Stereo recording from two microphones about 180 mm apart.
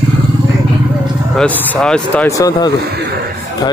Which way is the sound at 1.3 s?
10° left (ahead or behind).